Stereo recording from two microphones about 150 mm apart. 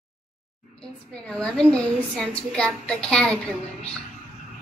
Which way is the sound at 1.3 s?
5° left (ahead or behind).